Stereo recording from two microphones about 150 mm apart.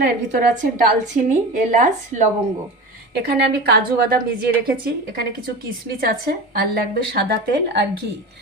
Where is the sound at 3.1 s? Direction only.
90° right.